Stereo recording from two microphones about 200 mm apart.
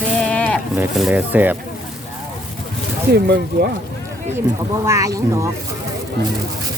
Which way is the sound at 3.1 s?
55° right (ahead or behind).